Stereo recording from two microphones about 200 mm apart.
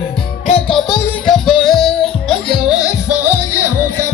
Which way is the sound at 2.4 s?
15° left (ahead or behind).